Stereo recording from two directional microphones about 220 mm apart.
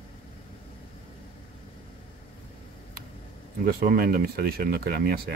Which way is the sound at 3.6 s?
40° right (ahead or behind).